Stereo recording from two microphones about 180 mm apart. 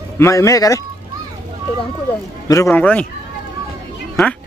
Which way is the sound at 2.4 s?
15° left (ahead or behind).